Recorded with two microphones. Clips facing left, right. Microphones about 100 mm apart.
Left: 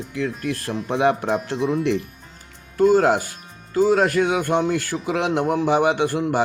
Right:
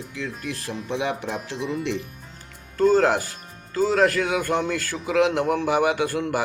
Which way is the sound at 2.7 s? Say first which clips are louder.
Left 2 dB; 15° left (ahead or behind).